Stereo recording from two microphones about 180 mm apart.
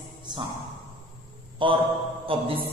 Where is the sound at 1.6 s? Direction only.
30° right (ahead or behind).